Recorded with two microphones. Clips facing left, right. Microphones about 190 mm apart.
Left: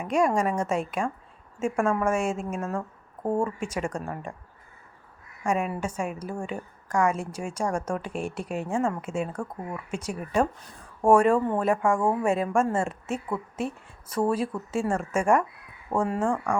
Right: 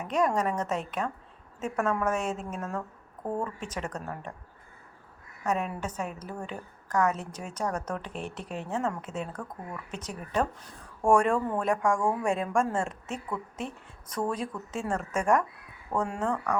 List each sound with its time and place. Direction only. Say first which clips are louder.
0.0 s a woman's voice: left 3 dB; 10° left (ahead or behind)
5.4 s a woman's voice: left 3 dB; 10° left (ahead or behind)
11.3 s speech: left 4 dB; 25° left (ahead or behind)
11.6 s a woman's voice: left 3 dB; 5° left (ahead or behind)